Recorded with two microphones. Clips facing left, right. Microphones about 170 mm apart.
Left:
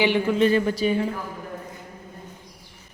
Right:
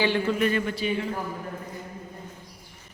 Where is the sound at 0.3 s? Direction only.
30° left (ahead or behind).